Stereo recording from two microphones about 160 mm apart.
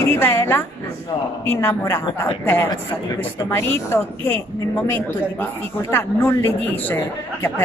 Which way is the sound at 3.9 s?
15° left (ahead or behind).